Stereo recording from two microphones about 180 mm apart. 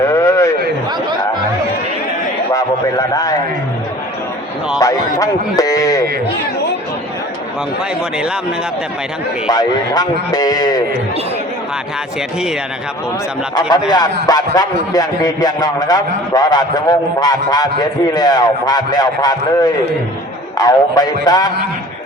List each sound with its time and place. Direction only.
0.0 s a sound: 15° left (ahead or behind)
2.5 s a man's voice: 20° left (ahead or behind)
4.8 s a man's voice: 20° left (ahead or behind)
9.5 s a man's voice: 20° left (ahead or behind)
13.6 s a man's voice: 20° left (ahead or behind)